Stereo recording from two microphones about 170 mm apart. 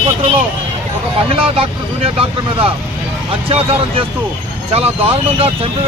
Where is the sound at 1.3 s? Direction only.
35° right (ahead or behind).